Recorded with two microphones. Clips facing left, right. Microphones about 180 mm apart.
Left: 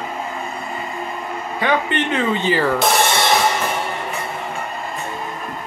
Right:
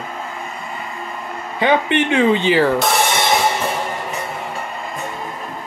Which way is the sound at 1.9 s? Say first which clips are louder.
Right 5 dB; 10° right (ahead or behind).